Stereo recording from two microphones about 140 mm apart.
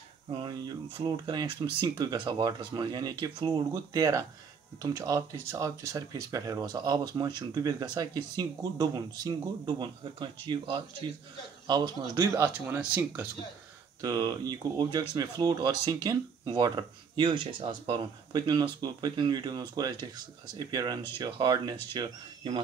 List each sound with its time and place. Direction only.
0.3 s speech: 35° right (ahead or behind)
12.2 s speech: 20° right (ahead or behind)
14.0 s speech: 25° right (ahead or behind)